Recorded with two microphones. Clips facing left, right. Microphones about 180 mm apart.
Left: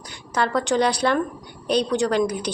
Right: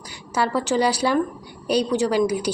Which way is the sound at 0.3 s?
5° right (ahead or behind).